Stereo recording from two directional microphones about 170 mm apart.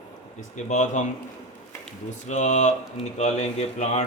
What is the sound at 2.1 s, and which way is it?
Speech, 45° left (ahead or behind).